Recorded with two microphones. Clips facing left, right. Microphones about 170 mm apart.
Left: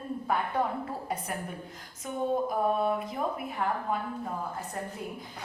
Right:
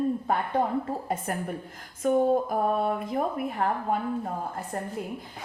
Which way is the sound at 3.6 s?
45° right (ahead or behind).